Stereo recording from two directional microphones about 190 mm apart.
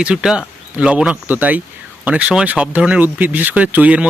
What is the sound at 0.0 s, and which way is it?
Speech, 5° right (ahead or behind).